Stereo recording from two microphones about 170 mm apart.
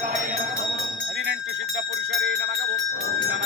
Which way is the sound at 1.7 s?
90° right.